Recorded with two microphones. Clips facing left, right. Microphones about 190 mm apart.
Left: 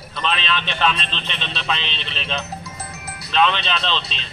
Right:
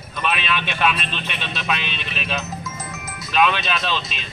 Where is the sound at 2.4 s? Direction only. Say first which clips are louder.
Right 2 dB; 35° left (ahead or behind).